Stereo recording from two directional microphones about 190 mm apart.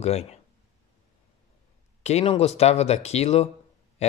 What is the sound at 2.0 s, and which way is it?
Speech, 35° left (ahead or behind).